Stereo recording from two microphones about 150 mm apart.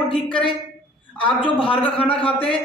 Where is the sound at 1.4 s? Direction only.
35° left (ahead or behind).